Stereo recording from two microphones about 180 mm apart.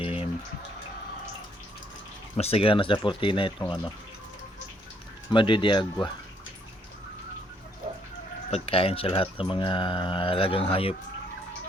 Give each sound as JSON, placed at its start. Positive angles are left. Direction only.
{"t": 0.0, "sound": "a sound", "side_deg": 30}
{"t": 2.3, "sound": "speech", "side_deg": 35}
{"t": 5.3, "sound": "speech", "side_deg": 25}
{"t": 8.4, "sound": "speech", "side_deg": 35}